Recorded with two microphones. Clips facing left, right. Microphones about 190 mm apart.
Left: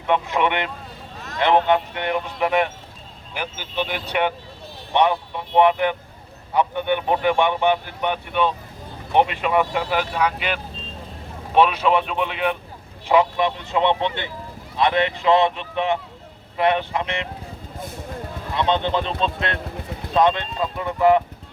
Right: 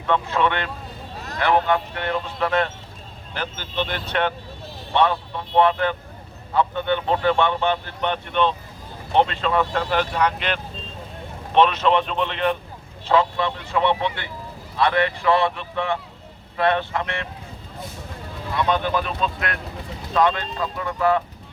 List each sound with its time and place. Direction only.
0.1 s speech: 15° left (ahead or behind)
18.5 s speech: 25° left (ahead or behind)